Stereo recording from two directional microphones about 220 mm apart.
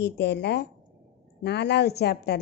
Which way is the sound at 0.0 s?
50° left (ahead or behind).